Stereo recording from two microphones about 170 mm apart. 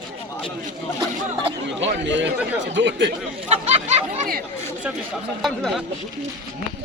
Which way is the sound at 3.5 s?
35° right (ahead or behind).